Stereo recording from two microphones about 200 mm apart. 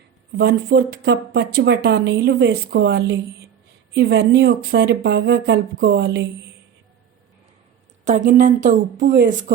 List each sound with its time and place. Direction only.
0.3 s speech: 50° right (ahead or behind)
8.0 s speech: 40° right (ahead or behind)